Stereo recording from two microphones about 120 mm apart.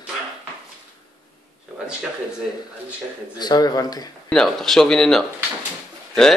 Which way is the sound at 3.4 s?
35° left (ahead or behind).